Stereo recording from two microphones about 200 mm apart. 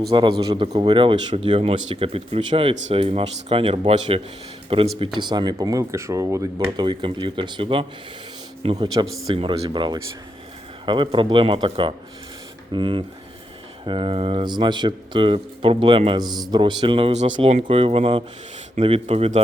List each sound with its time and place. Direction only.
0.1 s speech: 25° right (ahead or behind)
8.9 s speech: 15° right (ahead or behind); by 19.4 s 35° right (ahead or behind)